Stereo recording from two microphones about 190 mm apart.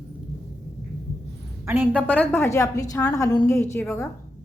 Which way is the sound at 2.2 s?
10° left (ahead or behind).